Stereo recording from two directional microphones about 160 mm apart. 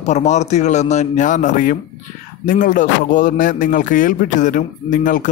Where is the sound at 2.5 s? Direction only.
55° left (ahead or behind).